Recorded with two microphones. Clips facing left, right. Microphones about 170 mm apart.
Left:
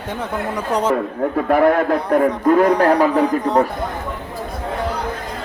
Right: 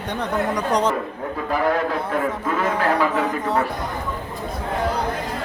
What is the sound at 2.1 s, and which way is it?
A man's voice, 50° left (ahead or behind).